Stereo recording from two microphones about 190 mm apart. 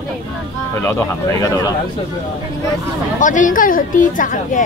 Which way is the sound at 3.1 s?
40° left (ahead or behind).